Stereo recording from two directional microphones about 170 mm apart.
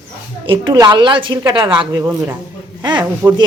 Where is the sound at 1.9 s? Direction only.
15° right (ahead or behind).